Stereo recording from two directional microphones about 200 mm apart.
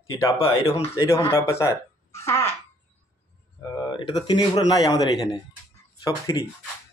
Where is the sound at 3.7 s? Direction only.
20° left (ahead or behind).